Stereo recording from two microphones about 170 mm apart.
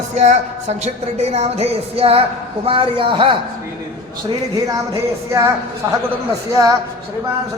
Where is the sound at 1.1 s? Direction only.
40° right (ahead or behind).